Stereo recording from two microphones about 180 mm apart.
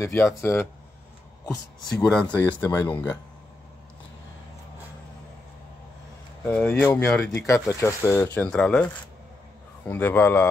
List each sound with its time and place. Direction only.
0.0 s speech: 10° left (ahead or behind)
1.8 s speech: centre (ahead or behind)
2.6 s speech: 20° left (ahead or behind)
6.4 s speech: 10° left (ahead or behind)
7.4 s speech: 15° left (ahead or behind)